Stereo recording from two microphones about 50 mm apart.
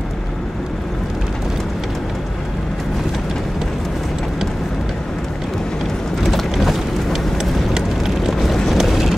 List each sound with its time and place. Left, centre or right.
6.2 s clip-clop: centre
7.7 s vehicle: centre